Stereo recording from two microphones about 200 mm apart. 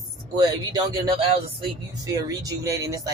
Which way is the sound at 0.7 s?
20° right (ahead or behind).